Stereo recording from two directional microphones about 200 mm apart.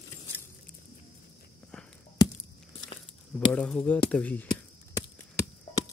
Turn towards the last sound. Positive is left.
turn(degrees=15)  # may be behind; listen again after turning